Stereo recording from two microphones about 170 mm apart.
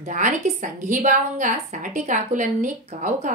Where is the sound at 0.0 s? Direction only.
50° right (ahead or behind).